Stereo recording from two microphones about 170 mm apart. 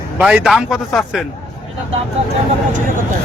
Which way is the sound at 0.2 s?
5° right (ahead or behind).